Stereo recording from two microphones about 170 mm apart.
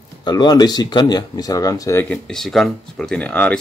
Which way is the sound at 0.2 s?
25° left (ahead or behind).